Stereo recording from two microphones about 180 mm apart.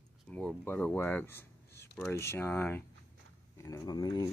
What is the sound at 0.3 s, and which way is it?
Speech, 5° left (ahead or behind).